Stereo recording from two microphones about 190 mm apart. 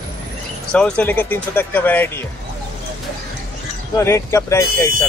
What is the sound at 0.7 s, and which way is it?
Speech, 5° left (ahead or behind).